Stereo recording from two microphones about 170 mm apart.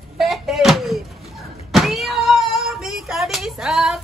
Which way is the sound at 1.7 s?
Centre (ahead or behind).